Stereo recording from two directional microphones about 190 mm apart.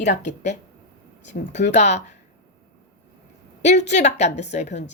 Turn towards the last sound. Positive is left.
turn(degrees=35)  # may be behind; listen again after turning